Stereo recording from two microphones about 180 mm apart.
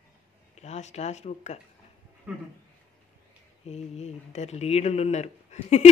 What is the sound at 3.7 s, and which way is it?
Speech, 40° left (ahead or behind).